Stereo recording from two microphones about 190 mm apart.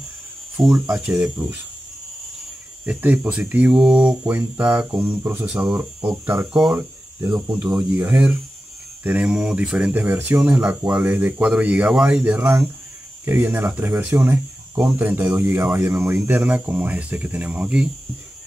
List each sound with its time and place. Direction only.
0.6 s speech: centre (ahead or behind)
2.8 s speech: 10° right (ahead or behind)
7.6 s speech: 5° right (ahead or behind)